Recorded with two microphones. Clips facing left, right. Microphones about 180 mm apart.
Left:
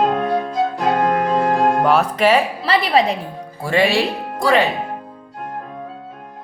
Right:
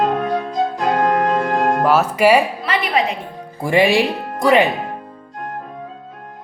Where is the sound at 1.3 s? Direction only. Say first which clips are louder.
Left 1 dB; centre (ahead or behind).